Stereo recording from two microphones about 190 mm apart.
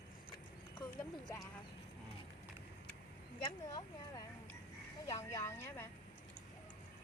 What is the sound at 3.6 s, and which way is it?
Speech, 20° left (ahead or behind).